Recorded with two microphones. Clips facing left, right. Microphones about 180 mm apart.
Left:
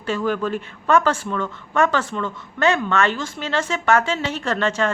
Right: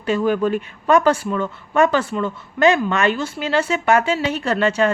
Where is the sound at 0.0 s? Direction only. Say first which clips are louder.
Right 4 dB; 15° right (ahead or behind).